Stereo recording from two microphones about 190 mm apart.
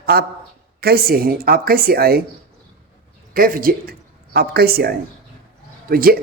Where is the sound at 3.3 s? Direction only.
50° right (ahead or behind).